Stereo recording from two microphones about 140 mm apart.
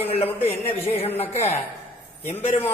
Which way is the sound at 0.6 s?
45° left (ahead or behind).